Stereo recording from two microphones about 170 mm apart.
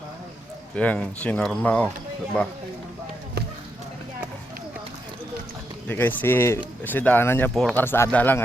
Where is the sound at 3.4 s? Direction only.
70° right (ahead or behind).